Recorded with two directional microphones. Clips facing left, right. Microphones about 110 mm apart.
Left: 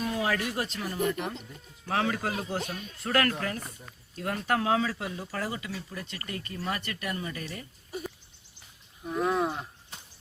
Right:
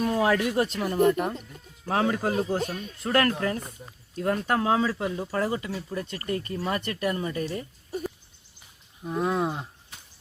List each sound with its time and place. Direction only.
0.0 s a sound: 45° right (ahead or behind)
0.5 s speech: 50° right (ahead or behind)
1.9 s a man's voice: 25° right (ahead or behind)
3.0 s a man's voice: 30° right (ahead or behind)
9.0 s speech: 25° right (ahead or behind)